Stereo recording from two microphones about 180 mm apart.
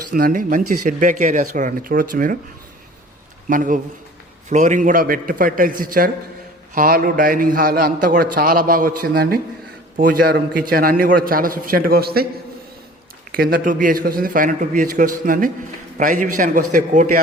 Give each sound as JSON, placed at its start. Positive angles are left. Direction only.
{"t": 0.1, "sound": "a man's voice", "side_deg": -55}
{"t": 3.5, "sound": "a man's voice", "side_deg": -45}
{"t": 13.3, "sound": "a man's voice", "side_deg": -55}